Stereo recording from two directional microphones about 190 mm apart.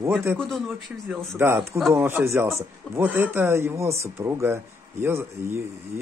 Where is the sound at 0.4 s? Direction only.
Centre (ahead or behind).